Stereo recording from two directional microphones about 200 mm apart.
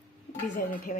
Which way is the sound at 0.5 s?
40° left (ahead or behind).